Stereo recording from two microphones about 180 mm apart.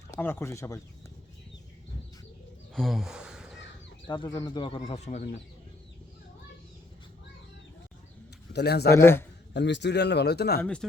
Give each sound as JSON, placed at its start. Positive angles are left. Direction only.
{"t": 0.1, "sound": "speech", "side_deg": 15}
{"t": 2.7, "sound": "a sound", "side_deg": 0}
{"t": 4.0, "sound": "speech", "side_deg": 25}
{"t": 8.5, "sound": "a man's voice", "side_deg": 65}
{"t": 8.9, "sound": "speech", "side_deg": 15}
{"t": 9.5, "sound": "a man's voice", "side_deg": 75}
{"t": 10.6, "sound": "speech", "side_deg": 5}